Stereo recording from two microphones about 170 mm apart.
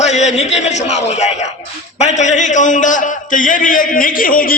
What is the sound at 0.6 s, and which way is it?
A man's voice, 40° left (ahead or behind).